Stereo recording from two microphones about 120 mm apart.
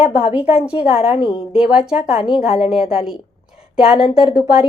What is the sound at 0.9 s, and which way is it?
Speech, 45° left (ahead or behind).